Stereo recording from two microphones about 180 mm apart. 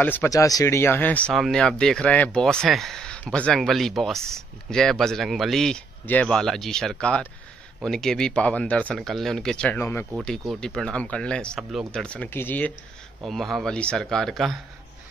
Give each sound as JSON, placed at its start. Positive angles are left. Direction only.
{"t": 0.0, "sound": "speech", "side_deg": 10}